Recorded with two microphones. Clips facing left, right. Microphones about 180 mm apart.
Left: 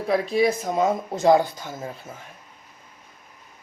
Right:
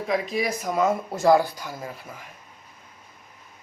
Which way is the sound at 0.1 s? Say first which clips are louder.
Left 5 dB; 30° left (ahead or behind).